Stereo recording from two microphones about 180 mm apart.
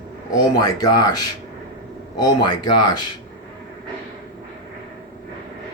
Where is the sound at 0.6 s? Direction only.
20° left (ahead or behind).